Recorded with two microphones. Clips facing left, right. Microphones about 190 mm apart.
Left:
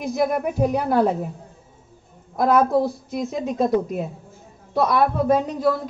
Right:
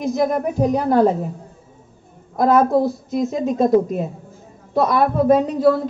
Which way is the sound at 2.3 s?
Centre (ahead or behind).